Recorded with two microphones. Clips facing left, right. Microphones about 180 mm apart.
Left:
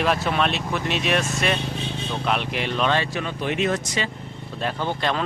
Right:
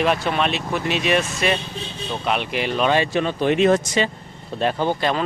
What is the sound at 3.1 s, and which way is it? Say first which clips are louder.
Speech: right 7 dB; 30° right (ahead or behind).